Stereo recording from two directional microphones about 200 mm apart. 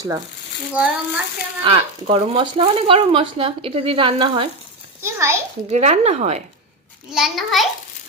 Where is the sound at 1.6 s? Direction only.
25° right (ahead or behind).